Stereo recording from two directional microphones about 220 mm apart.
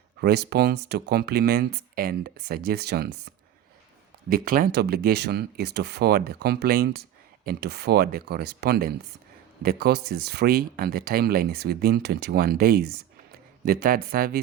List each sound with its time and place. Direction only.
0.2 s speech: 45° right (ahead or behind)
4.3 s a man's voice: 40° right (ahead or behind)